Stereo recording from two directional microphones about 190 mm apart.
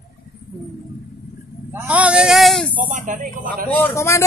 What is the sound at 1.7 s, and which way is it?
Speech, 5° right (ahead or behind).